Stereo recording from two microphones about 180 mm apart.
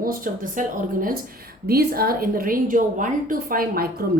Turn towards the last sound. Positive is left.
turn(degrees=-55)  # may be behind; listen again after turning